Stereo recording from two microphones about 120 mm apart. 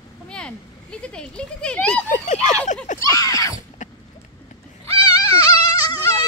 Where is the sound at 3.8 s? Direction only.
90° left.